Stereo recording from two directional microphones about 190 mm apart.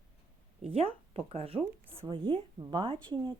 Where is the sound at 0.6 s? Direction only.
30° right (ahead or behind).